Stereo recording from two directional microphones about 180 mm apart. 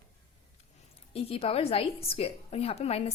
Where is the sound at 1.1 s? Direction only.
30° left (ahead or behind).